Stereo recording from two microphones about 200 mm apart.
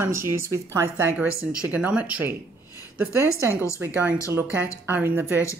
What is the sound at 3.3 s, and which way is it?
Speech, 15° right (ahead or behind).